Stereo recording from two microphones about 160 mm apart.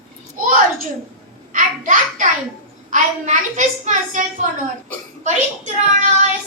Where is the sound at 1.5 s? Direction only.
55° right (ahead or behind).